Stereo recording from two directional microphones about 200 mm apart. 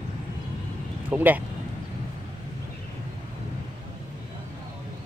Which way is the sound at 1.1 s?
10° right (ahead or behind).